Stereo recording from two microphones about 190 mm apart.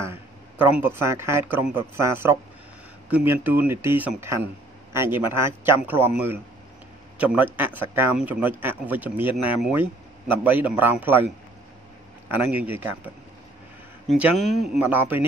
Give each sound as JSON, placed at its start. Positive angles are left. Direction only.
{"t": 0.7, "sound": "speech", "side_deg": -10}
{"t": 12.3, "sound": "speech", "side_deg": -10}